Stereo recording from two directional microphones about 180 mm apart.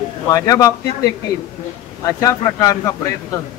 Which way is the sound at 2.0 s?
20° left (ahead or behind).